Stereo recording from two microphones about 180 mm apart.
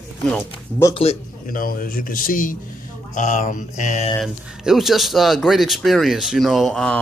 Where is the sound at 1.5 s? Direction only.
50° left (ahead or behind).